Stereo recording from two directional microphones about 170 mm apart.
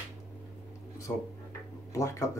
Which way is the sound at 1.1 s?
15° left (ahead or behind).